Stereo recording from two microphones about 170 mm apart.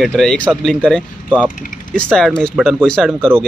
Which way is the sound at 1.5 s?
50° left (ahead or behind).